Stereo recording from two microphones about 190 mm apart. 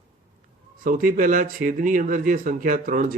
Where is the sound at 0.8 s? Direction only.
45° right (ahead or behind).